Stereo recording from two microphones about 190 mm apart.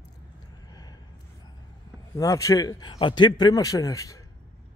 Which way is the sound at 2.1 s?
15° left (ahead or behind).